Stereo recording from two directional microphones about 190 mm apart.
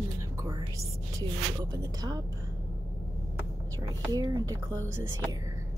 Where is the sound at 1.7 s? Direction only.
20° right (ahead or behind).